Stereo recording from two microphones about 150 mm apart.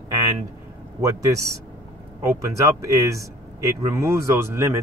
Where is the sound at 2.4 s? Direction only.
20° right (ahead or behind).